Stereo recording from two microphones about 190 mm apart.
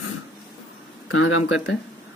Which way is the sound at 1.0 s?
90° left.